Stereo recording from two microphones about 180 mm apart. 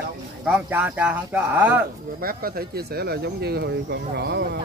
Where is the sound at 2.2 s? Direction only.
55° right (ahead or behind).